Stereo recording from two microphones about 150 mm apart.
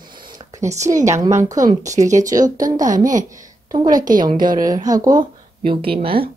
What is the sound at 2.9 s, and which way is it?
Speech, 60° right (ahead or behind).